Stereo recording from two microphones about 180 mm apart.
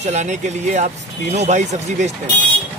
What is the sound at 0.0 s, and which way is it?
Speech, 40° right (ahead or behind).